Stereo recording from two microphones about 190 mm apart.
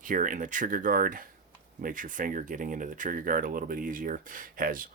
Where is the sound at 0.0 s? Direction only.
45° right (ahead or behind).